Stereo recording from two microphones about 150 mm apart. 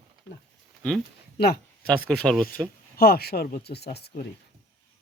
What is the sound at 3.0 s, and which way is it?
Speech, 90° left.